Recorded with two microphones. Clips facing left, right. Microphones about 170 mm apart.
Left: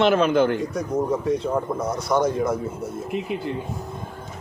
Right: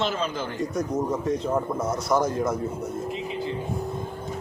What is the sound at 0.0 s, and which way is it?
Speech, 60° left (ahead or behind).